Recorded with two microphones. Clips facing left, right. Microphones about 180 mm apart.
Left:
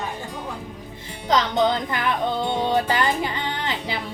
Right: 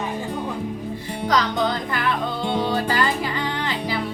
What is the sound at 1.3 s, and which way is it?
Music, 20° left (ahead or behind).